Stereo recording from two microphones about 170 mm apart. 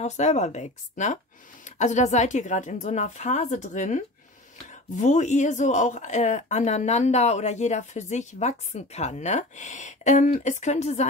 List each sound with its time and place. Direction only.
0.0 s speech: 45° left (ahead or behind)